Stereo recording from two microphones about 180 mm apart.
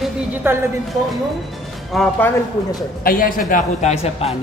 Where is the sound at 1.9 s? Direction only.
Centre (ahead or behind).